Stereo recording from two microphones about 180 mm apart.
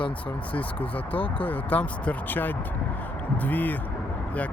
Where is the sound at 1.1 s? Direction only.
30° left (ahead or behind).